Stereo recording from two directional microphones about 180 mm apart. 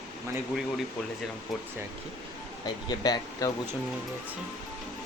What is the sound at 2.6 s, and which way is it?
Speech, 25° left (ahead or behind).